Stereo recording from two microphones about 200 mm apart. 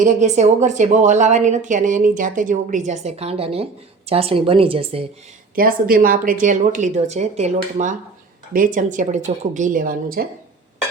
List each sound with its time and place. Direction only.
0.0 s a woman's voice: 40° right (ahead or behind)
5.5 s a woman's voice: 45° right (ahead or behind)